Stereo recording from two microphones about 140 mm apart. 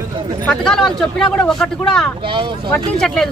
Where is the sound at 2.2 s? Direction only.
35° right (ahead or behind).